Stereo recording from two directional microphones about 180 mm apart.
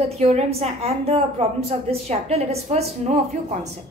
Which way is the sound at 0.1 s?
35° right (ahead or behind).